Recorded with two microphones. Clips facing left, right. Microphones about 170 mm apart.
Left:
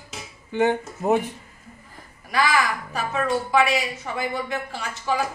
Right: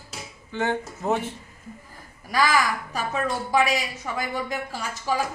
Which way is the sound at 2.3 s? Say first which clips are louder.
Even; 40° right (ahead or behind).